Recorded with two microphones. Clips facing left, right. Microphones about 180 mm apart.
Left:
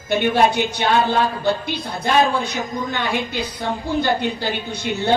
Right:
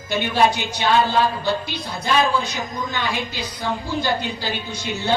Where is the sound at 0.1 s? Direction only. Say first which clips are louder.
Left 2 dB; 55° left (ahead or behind).